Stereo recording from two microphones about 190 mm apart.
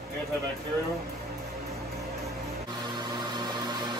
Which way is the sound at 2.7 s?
25° right (ahead or behind).